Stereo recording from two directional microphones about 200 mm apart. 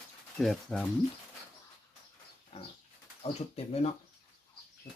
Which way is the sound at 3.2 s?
30° left (ahead or behind).